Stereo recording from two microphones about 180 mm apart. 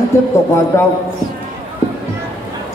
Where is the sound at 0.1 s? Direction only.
15° left (ahead or behind).